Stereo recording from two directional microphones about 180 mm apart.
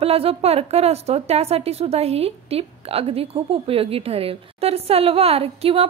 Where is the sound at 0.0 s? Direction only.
35° right (ahead or behind).